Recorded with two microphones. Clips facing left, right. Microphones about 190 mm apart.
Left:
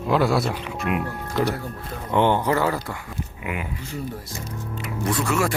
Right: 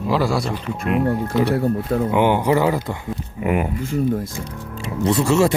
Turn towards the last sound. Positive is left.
turn(degrees=-25)  # may be behind; listen again after turning